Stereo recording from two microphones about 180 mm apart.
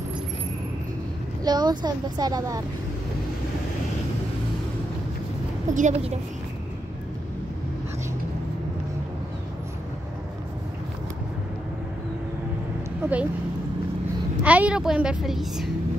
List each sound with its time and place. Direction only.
1.4 s a woman's voice: 20° right (ahead or behind)
5.8 s a woman's voice: 35° right (ahead or behind)
13.0 s speech: 10° right (ahead or behind)
14.4 s a woman's voice: 10° right (ahead or behind)